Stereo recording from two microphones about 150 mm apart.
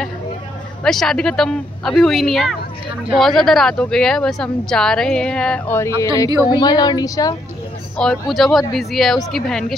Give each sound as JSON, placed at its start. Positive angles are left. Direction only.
{"t": 0.8, "sound": "speech", "side_deg": 5}
{"t": 5.8, "sound": "a woman's voice", "side_deg": 20}
{"t": 8.0, "sound": "speech", "side_deg": 0}